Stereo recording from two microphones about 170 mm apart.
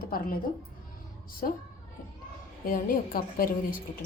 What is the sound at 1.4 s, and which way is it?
Speech, 55° left (ahead or behind).